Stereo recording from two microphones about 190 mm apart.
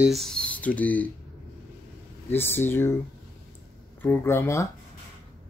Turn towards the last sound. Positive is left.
turn(degrees=15)  # may be behind; listen again after turning